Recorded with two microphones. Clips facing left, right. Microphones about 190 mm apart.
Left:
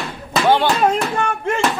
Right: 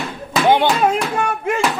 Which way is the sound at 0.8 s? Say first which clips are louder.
Even; centre (ahead or behind).